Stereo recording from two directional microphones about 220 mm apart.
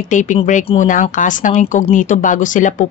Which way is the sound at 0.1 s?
35° left (ahead or behind).